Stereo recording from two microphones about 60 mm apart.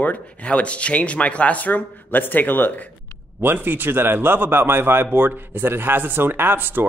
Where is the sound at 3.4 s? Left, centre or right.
Right.